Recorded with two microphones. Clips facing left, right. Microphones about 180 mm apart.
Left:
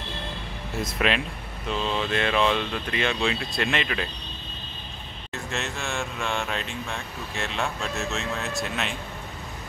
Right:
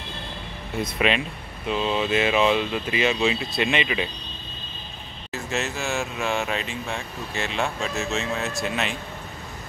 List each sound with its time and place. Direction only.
0.7 s speech: centre (ahead or behind)
5.3 s speech: 5° right (ahead or behind)